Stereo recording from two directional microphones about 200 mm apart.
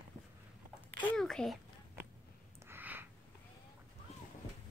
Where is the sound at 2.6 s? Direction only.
10° right (ahead or behind).